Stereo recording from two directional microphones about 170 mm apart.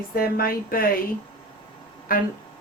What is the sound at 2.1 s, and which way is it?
Speech, 55° left (ahead or behind).